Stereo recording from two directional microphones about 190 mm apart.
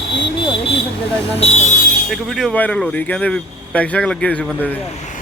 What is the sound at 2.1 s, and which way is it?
Speech, centre (ahead or behind).